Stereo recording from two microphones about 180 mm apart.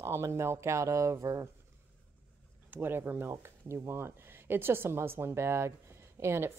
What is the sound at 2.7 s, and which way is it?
Speech, 10° right (ahead or behind).